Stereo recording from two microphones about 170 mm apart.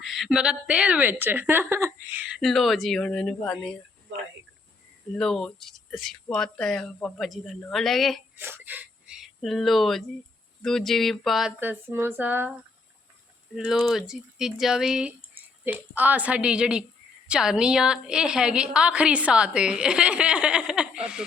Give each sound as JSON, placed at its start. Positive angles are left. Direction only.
{"t": 0.0, "sound": "a woman's voice", "side_deg": 0}
{"t": 5.1, "sound": "a woman's voice", "side_deg": 5}
{"t": 8.4, "sound": "a woman's voice", "side_deg": -15}
{"t": 11.6, "sound": "a woman's voice", "side_deg": -15}
{"t": 13.7, "sound": "a woman's voice", "side_deg": 0}